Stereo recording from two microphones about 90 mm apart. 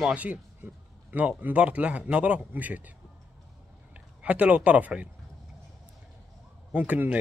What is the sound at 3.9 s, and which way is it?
Speech, 15° right (ahead or behind).